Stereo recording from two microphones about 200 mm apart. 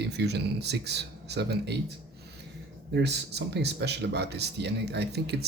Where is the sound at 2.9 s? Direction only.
55° right (ahead or behind).